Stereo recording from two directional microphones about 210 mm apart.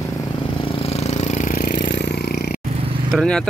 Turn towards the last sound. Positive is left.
turn(degrees=5)  # may be behind; listen again after turning